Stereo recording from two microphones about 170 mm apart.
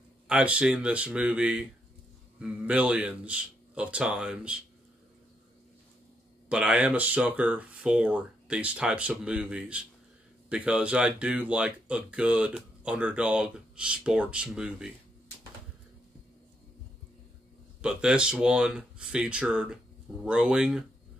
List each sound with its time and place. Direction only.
0.3 s speech: 5° right (ahead or behind)
6.5 s speech: 10° right (ahead or behind)
17.8 s speech: 5° right (ahead or behind)